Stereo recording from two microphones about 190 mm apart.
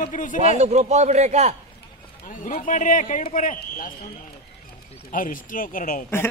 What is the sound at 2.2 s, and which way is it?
A man's voice, 40° left (ahead or behind).